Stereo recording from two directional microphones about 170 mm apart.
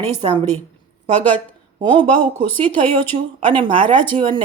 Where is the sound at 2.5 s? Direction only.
10° left (ahead or behind).